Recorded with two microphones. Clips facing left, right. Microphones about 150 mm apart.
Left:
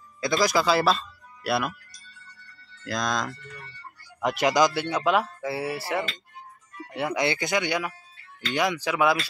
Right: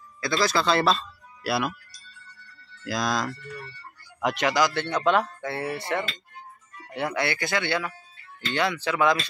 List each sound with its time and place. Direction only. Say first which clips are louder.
0.2 s speech: left 1 dB; 15° left (ahead or behind); by 1.8 s centre (ahead or behind)
2.8 s a man's voice: right 1 dB; 5° right (ahead or behind)
4.5 s speech: left 3 dB; 15° left (ahead or behind)
7.2 s speech: left 3 dB; 20° left (ahead or behind)